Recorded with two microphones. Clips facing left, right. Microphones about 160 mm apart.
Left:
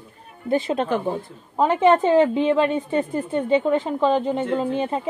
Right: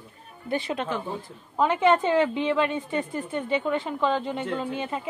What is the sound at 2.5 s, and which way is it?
A woman's voice, 25° left (ahead or behind).